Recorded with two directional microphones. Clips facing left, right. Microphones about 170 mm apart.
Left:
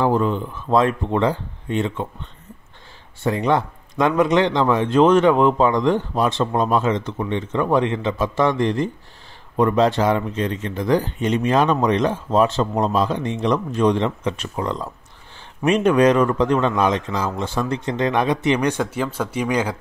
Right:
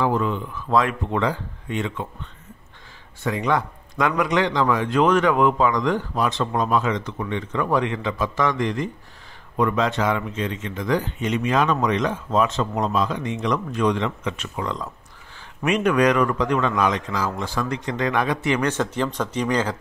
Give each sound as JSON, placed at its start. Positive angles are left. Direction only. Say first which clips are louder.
{"t": 0.0, "sound": "a man's voice", "louder": "left 3 dB", "side_deg": 35}
{"t": 3.3, "sound": "a man's voice", "louder": "left 3 dB", "side_deg": 30}